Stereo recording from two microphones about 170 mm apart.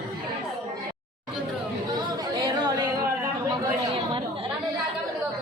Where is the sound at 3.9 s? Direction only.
30° right (ahead or behind).